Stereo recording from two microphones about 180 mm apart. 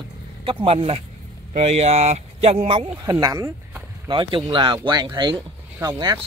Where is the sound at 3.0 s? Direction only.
20° right (ahead or behind).